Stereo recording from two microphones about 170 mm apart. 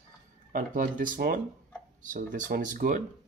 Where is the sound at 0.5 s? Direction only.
55° right (ahead or behind).